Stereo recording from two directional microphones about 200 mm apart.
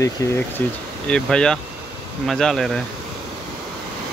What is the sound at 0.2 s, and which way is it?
Speech, 15° left (ahead or behind).